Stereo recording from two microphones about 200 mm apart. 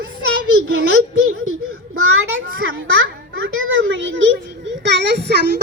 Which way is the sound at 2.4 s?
70° right (ahead or behind).